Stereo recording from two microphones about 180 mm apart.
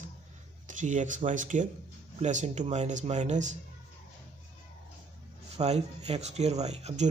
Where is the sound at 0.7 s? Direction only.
45° right (ahead or behind).